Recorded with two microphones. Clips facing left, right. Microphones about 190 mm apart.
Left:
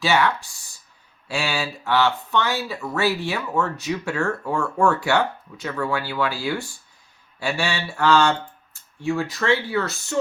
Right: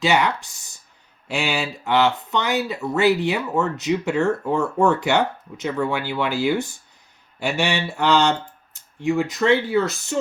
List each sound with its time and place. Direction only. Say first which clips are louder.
0.0 s speech: right 1 dB; 20° right (ahead or behind)